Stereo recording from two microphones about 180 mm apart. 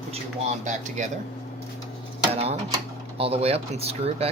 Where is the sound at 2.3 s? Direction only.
35° right (ahead or behind).